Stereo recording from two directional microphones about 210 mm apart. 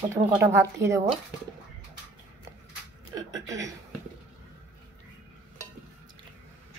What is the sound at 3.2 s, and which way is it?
Speech, 15° right (ahead or behind).